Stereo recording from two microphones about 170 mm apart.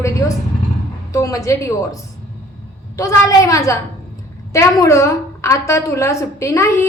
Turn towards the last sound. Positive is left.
turn(degrees=15)  # may be behind; listen again after turning